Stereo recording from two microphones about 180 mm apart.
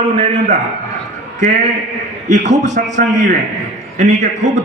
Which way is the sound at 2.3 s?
40° right (ahead or behind).